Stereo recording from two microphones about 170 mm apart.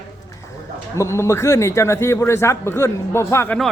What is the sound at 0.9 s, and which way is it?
A man's voice, 15° left (ahead or behind).